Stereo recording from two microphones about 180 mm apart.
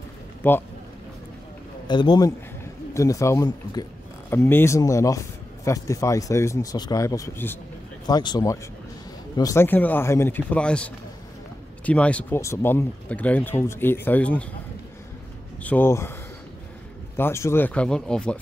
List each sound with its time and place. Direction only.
0.4 s speech: 10° left (ahead or behind)
1.9 s speech: 25° left (ahead or behind)
15.6 s speech: 10° left (ahead or behind)
17.2 s speech: 15° left (ahead or behind)